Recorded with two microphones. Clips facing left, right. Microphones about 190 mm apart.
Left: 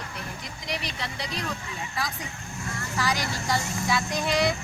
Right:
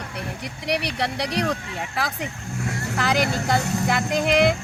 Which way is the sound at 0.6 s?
70° right (ahead or behind).